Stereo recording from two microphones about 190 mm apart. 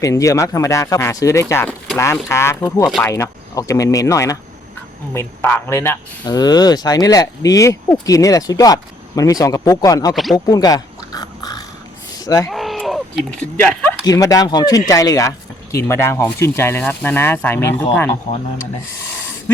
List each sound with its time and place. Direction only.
0.0 s speech: 15° left (ahead or behind)
10.3 s dog: 20° left (ahead or behind)
12.2 s speech: 20° left (ahead or behind)
12.5 s speech: centre (ahead or behind)
14.0 s speech: 20° left (ahead or behind)